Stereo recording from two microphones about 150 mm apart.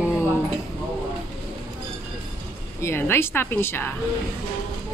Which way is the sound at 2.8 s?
15° left (ahead or behind).